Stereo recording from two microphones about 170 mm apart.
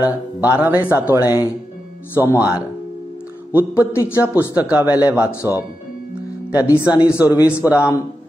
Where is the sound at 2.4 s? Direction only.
5° right (ahead or behind).